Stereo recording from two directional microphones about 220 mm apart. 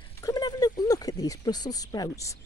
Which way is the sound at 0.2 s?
15° left (ahead or behind).